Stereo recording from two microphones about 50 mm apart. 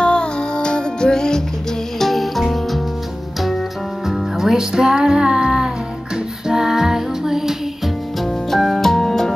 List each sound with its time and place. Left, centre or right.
0.0 s music: centre
2.0 s music: centre
4.1 s music: centre
8.2 s music: centre